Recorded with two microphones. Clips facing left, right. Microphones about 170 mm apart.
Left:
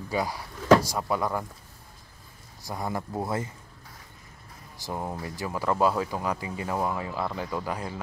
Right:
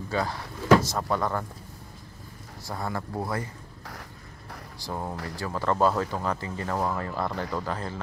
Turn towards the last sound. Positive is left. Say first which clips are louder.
# even
turn(degrees=10)  # may be behind; listen again after turning